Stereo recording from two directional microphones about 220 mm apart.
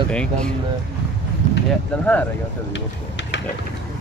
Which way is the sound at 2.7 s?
55° left (ahead or behind).